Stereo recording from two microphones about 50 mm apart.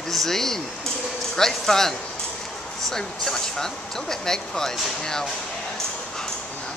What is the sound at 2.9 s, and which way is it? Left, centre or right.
Speech, centre.